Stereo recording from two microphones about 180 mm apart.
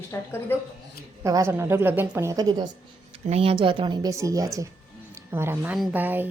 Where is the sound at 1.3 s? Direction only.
20° right (ahead or behind).